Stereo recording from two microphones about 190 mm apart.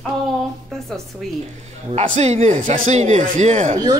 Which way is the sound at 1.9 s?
35° right (ahead or behind).